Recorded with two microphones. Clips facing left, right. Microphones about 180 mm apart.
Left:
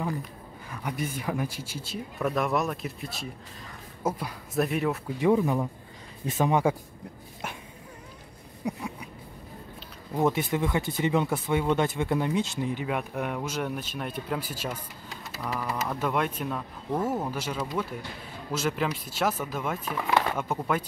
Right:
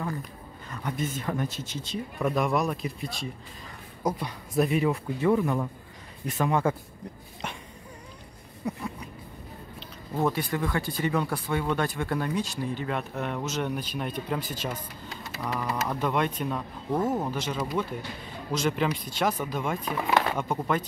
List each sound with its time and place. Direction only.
0.7 s speech: 10° left (ahead or behind)
5.2 s speech: 15° left (ahead or behind)
8.6 s a sound: 15° left (ahead or behind)
10.1 s speech: 20° left (ahead or behind); by 17.0 s 5° right (ahead or behind)
17.3 s speech: 5° left (ahead or behind)